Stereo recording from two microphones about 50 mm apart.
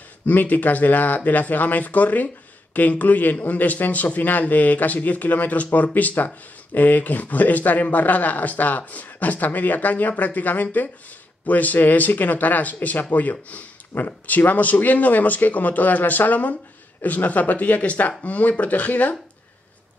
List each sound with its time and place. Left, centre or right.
0.3 s speech: left